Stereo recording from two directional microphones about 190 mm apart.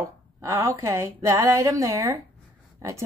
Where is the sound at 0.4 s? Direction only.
15° right (ahead or behind).